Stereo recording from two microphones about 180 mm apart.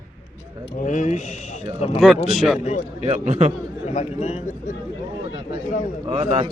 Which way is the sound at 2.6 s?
40° left (ahead or behind).